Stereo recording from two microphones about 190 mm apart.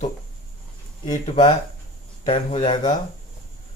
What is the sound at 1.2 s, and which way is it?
A man's voice, 30° left (ahead or behind).